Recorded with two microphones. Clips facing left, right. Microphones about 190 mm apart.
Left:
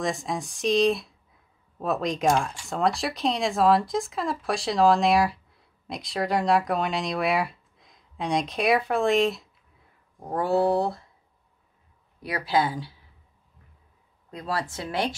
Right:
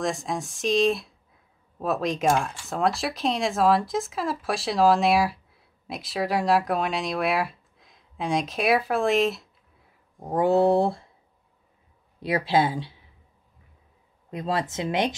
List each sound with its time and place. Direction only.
0.0 s speech: centre (ahead or behind)
10.3 s speech: 20° right (ahead or behind)
12.2 s speech: 25° right (ahead or behind)
14.3 s speech: 20° right (ahead or behind)